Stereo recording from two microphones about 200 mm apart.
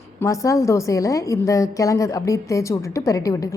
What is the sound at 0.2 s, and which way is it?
A woman's voice, 15° left (ahead or behind).